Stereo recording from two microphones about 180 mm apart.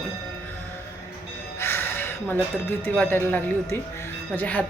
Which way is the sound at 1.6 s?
15° left (ahead or behind).